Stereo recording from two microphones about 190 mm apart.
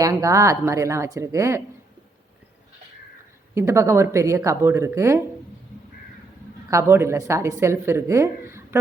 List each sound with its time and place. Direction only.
0.0 s speech: 15° right (ahead or behind)
3.5 s speech: 15° right (ahead or behind)
6.7 s speech: 15° right (ahead or behind)